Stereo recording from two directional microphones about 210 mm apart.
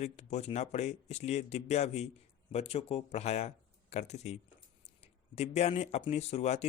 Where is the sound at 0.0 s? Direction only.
30° left (ahead or behind).